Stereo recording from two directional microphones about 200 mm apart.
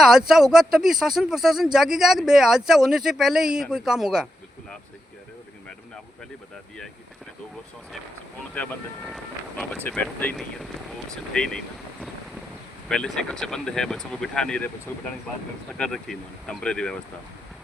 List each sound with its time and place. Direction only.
0.0 s speech: centre (ahead or behind)
8.5 s speech: 5° left (ahead or behind)
15.8 s speech: 5° left (ahead or behind)